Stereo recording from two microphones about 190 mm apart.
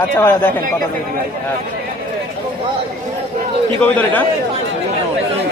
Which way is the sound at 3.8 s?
10° left (ahead or behind).